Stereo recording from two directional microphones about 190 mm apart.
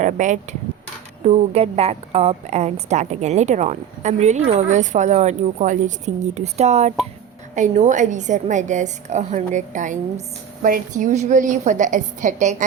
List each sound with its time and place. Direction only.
0.0 s a woman's voice: 40° right (ahead or behind)